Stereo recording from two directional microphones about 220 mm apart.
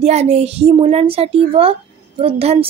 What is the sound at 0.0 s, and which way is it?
Speech, 30° right (ahead or behind).